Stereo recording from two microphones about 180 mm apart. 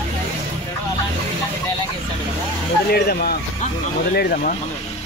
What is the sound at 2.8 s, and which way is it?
Speech, 60° left (ahead or behind).